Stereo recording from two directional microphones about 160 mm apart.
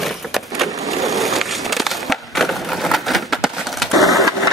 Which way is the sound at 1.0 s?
Centre (ahead or behind).